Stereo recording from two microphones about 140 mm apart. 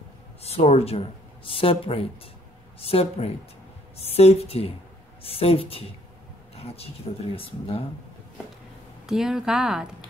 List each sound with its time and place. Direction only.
0.4 s a woman's voice: 45° left (ahead or behind)
9.0 s speech: 5° right (ahead or behind)